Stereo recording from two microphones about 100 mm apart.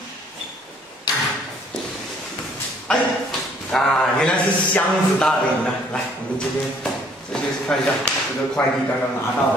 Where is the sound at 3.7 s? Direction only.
5° left (ahead or behind).